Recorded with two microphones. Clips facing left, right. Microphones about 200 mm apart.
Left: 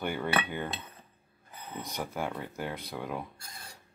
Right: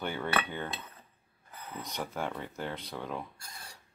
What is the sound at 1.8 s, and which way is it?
Speech, 10° left (ahead or behind).